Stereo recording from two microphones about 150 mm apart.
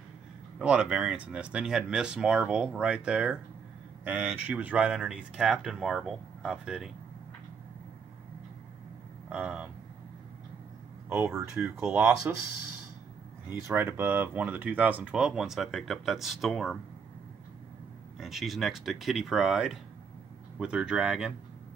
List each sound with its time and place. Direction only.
0.6 s speech: 5° right (ahead or behind)
9.3 s speech: 10° right (ahead or behind)
11.2 s speech: 5° right (ahead or behind)
12.3 s speech: 15° right (ahead or behind)
13.5 s speech: 15° right (ahead or behind); by 16.7 s centre (ahead or behind)
18.2 s speech: centre (ahead or behind)